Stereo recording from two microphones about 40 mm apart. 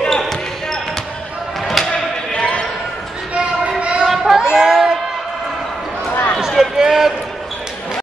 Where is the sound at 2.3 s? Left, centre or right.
Left.